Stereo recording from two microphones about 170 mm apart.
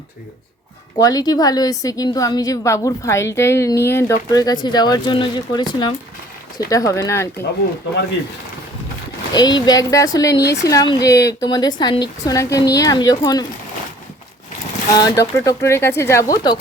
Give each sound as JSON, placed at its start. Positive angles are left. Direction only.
{"t": 0.9, "sound": "a woman's voice", "side_deg": 20}
{"t": 9.3, "sound": "a woman's voice", "side_deg": 25}
{"t": 10.4, "sound": "speech", "side_deg": 85}
{"t": 10.7, "sound": "a woman's voice", "side_deg": 20}
{"t": 14.9, "sound": "a woman's voice", "side_deg": 20}